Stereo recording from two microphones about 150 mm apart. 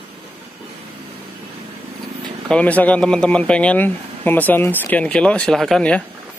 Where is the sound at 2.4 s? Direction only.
10° left (ahead or behind).